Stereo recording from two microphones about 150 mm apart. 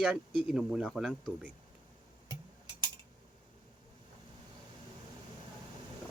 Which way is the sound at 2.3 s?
30° right (ahead or behind).